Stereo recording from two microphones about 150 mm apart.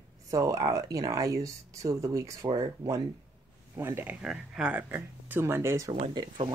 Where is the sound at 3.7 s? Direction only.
15° right (ahead or behind).